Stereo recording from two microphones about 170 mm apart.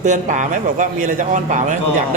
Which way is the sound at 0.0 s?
50° right (ahead or behind).